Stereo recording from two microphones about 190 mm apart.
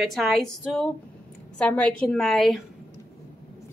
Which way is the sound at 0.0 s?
Centre (ahead or behind).